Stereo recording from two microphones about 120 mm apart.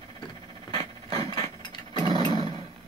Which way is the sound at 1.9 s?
35° right (ahead or behind).